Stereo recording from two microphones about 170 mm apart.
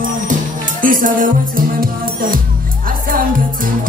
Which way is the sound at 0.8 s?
50° right (ahead or behind).